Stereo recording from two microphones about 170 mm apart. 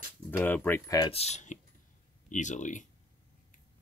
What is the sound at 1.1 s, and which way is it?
Speech, 40° left (ahead or behind).